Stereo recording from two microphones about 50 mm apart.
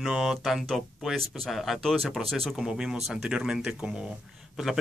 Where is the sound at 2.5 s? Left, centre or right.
Centre.